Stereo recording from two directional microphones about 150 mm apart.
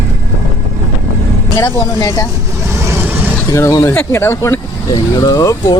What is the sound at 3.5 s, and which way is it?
Speech, 20° left (ahead or behind).